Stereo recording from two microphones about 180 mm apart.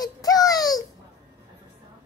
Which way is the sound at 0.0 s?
20° left (ahead or behind).